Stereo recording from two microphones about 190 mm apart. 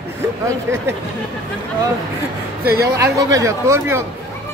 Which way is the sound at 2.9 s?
15° right (ahead or behind).